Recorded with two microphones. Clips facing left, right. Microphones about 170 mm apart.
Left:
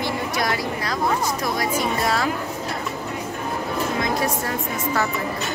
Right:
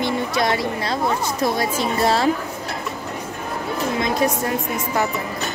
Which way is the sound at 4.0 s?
20° right (ahead or behind).